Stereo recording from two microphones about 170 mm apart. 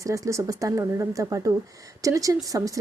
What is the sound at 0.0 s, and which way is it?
A woman's voice, 20° right (ahead or behind).